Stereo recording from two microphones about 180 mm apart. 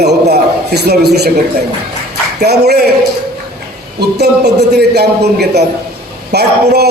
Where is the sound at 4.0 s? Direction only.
65° right (ahead or behind).